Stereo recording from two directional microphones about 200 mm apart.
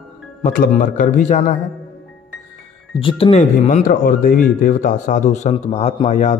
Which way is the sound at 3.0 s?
25° left (ahead or behind).